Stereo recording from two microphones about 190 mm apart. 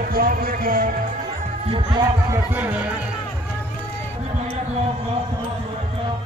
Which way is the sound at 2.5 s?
10° right (ahead or behind).